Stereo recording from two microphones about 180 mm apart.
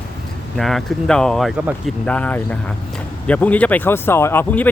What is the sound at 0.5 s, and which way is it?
Speech, centre (ahead or behind).